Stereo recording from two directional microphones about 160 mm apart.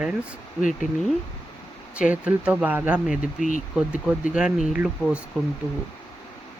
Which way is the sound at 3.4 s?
55° left (ahead or behind).